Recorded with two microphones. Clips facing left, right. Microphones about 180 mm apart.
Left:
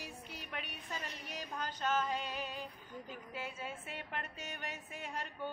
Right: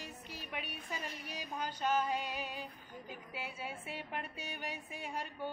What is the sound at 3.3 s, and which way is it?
A woman's voice, 10° right (ahead or behind).